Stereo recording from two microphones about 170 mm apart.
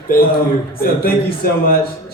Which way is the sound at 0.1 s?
60° left (ahead or behind).